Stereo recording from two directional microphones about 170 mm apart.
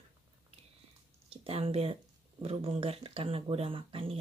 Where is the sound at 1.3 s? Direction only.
35° right (ahead or behind).